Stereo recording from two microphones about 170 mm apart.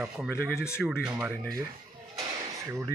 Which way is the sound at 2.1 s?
20° right (ahead or behind).